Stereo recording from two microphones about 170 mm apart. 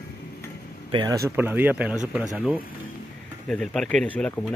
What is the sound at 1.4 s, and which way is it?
Speech, 10° right (ahead or behind).